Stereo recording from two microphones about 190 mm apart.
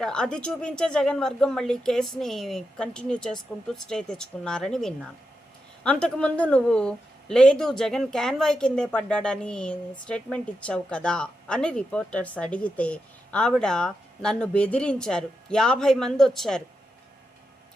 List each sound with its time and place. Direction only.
0.0 s a woman's voice: 5° left (ahead or behind)